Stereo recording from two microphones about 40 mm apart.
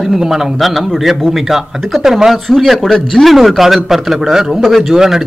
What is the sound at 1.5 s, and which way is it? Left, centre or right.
Speech, centre.